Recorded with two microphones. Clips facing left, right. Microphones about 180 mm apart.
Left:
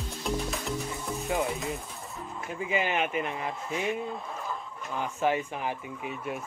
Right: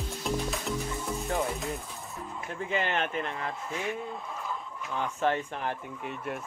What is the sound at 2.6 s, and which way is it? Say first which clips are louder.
Speech: left 1 dB; 10° left (ahead or behind).